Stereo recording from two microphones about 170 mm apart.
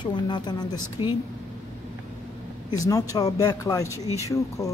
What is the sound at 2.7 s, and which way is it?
Speech, 20° left (ahead or behind).